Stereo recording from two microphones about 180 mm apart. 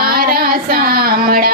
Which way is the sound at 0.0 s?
55° right (ahead or behind).